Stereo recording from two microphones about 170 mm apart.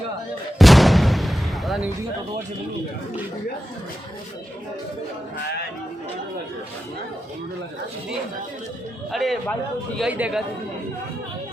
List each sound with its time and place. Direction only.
0.6 s artillery fire: centre (ahead or behind)
9.1 s a man's voice: centre (ahead or behind)